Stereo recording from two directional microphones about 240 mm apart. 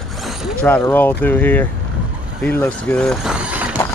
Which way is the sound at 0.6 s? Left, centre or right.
Centre.